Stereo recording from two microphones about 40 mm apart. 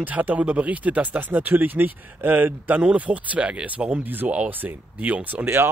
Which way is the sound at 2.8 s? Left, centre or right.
Right.